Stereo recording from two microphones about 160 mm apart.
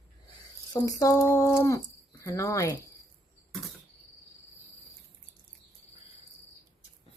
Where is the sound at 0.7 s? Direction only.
20° left (ahead or behind).